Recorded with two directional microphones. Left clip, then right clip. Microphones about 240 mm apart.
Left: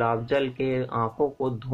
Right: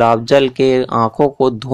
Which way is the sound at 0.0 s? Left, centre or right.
Right.